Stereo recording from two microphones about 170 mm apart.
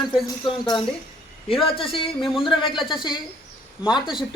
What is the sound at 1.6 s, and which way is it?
Speech, 30° left (ahead or behind).